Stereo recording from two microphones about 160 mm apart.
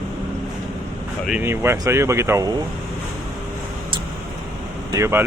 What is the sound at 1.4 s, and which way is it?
Speech, 15° right (ahead or behind).